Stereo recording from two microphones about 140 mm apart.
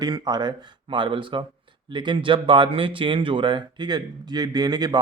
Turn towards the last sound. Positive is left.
turn(degrees=-30)  # may be behind; listen again after turning